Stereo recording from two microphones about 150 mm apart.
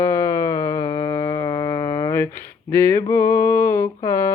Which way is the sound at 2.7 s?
15° left (ahead or behind).